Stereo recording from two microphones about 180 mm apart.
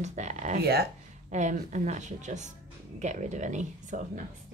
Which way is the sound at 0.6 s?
60° right (ahead or behind).